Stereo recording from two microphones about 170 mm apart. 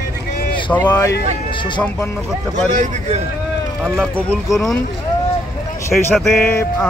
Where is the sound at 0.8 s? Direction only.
25° left (ahead or behind).